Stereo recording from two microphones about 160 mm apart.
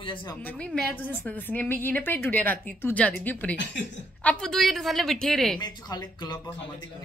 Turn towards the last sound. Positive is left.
turn(degrees=25)  # may be behind; listen again after turning